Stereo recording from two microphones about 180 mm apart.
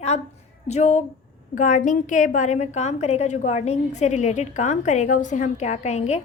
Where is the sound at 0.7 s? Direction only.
40° left (ahead or behind).